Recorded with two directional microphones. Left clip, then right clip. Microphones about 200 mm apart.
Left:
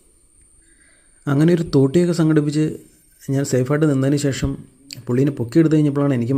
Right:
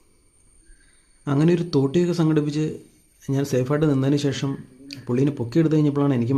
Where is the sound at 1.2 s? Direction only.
20° left (ahead or behind).